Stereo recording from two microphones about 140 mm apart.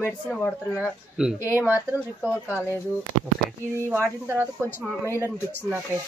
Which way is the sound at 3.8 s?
15° right (ahead or behind).